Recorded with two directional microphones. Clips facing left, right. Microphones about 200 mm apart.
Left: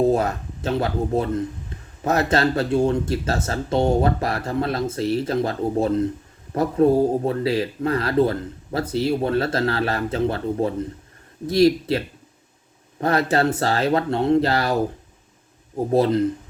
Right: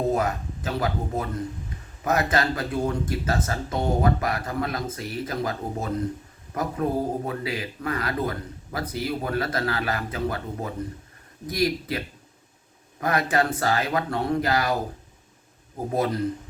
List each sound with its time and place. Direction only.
0.1 s speech: 30° left (ahead or behind)
15.9 s speech: 30° left (ahead or behind)